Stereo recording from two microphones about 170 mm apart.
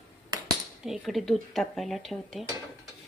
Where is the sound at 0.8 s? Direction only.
Centre (ahead or behind).